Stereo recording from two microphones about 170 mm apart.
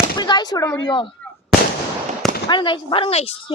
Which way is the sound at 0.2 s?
25° left (ahead or behind).